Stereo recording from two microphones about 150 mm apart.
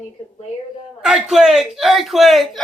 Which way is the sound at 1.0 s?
5° right (ahead or behind).